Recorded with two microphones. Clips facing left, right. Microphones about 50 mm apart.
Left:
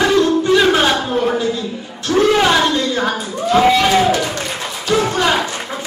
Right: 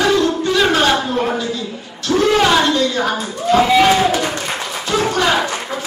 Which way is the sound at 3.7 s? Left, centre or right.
Centre.